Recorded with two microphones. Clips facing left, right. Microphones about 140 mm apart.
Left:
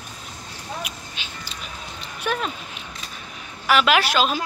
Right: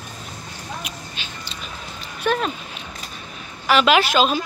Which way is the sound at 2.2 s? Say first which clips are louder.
Right 5 dB; 10° left (ahead or behind).